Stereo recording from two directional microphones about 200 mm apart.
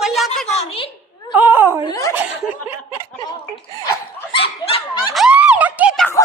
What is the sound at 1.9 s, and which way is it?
Speech, 15° left (ahead or behind).